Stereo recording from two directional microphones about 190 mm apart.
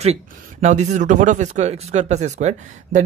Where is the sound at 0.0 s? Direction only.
35° right (ahead or behind).